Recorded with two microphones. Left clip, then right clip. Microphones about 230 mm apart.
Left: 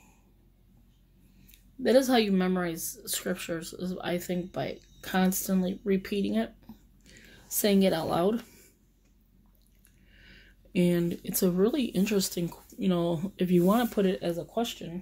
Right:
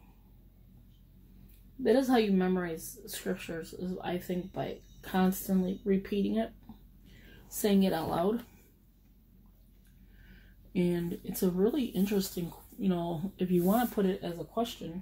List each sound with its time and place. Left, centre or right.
1.8 s a woman's voice: left
10.7 s a woman's voice: left